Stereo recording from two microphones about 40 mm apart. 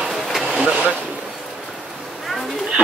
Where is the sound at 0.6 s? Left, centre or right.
Right.